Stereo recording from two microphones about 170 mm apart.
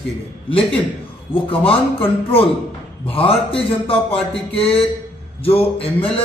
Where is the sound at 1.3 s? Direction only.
30° left (ahead or behind).